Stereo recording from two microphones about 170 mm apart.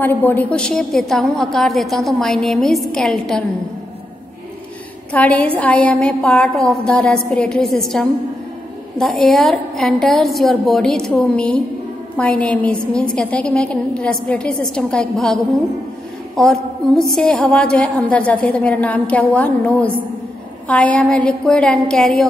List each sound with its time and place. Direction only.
0.0 s a woman's voice: 10° left (ahead or behind)
5.1 s a woman's voice: 10° left (ahead or behind)
16.3 s a woman's voice: centre (ahead or behind)